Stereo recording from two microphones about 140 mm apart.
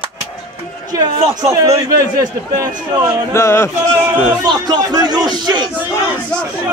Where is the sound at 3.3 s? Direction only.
20° left (ahead or behind).